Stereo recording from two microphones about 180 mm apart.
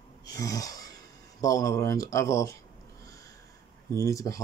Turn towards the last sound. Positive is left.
turn(degrees=20)  # may be behind; listen again after turning